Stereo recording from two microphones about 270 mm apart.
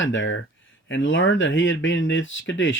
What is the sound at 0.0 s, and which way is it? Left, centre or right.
Speech, left.